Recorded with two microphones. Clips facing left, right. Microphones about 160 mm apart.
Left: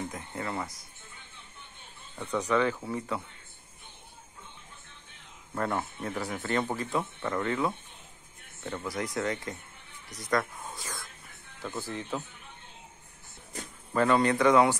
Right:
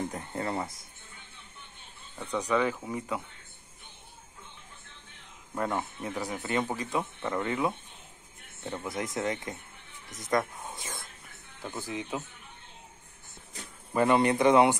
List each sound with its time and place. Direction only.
0.1 s a sound: 35° right (ahead or behind)
2.3 s speech: 10° right (ahead or behind)
5.5 s speech: 15° right (ahead or behind)
13.9 s speech: 15° right (ahead or behind)